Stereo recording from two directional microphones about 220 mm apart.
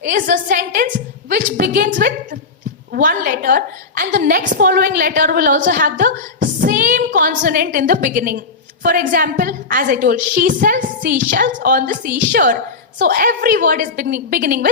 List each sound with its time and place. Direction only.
0.0 s a woman's voice: 40° right (ahead or behind)